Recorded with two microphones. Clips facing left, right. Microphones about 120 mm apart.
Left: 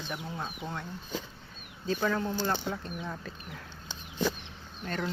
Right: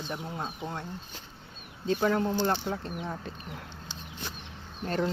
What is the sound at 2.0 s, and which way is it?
Speech, 30° right (ahead or behind).